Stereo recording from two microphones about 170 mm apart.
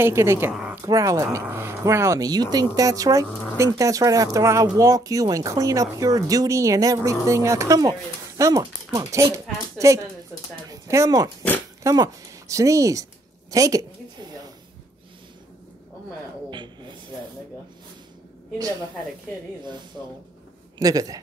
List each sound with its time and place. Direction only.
0.0 s speech: 15° right (ahead or behind)
0.5 s speech: 5° right (ahead or behind)
0.8 s a woman's voice: 20° right (ahead or behind)
16.4 s a sound: 25° right (ahead or behind)
20.8 s speech: 20° right (ahead or behind)